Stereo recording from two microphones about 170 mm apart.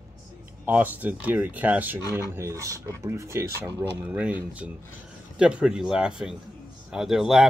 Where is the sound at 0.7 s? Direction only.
10° right (ahead or behind).